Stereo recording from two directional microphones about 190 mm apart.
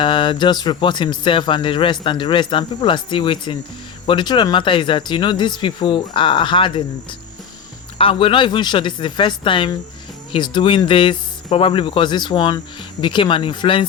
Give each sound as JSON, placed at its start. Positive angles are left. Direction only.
{"t": 0.0, "sound": "speech", "side_deg": 25}